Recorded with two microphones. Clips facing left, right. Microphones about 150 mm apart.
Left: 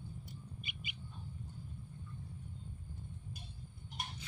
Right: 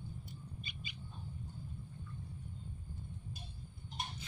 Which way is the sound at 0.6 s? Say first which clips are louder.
Even; 20° left (ahead or behind).